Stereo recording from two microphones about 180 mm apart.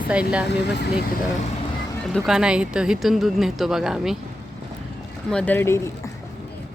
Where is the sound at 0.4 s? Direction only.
70° left (ahead or behind).